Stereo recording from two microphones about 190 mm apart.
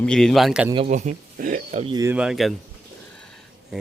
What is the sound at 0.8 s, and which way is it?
Speech, 40° right (ahead or behind).